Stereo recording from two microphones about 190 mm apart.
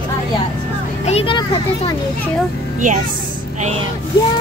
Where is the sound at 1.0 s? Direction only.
30° left (ahead or behind).